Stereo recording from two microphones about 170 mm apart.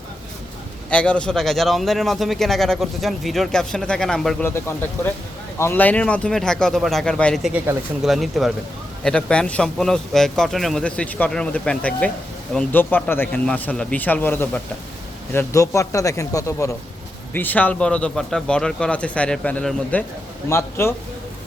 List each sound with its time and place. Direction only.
0.9 s a man's voice: 5° left (ahead or behind)
4.4 s a man's voice: 10° left (ahead or behind)